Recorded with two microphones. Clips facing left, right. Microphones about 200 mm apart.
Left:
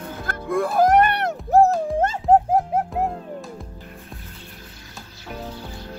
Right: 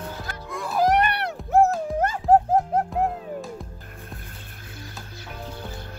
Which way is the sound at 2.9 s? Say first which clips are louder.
Even; centre (ahead or behind).